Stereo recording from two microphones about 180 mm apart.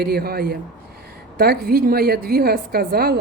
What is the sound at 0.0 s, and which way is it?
Speech, 60° right (ahead or behind).